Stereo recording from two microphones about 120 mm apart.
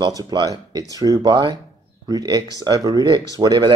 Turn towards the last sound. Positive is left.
turn(degrees=-35)  # may be behind; listen again after turning